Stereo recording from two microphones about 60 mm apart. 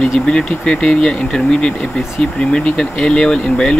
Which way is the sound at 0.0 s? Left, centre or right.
Centre.